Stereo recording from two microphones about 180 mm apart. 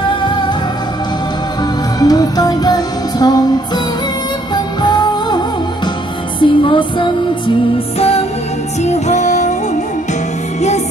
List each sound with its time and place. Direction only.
2.0 s music: 20° left (ahead or behind)
6.4 s music: 25° left (ahead or behind)
8.8 s music: 40° left (ahead or behind)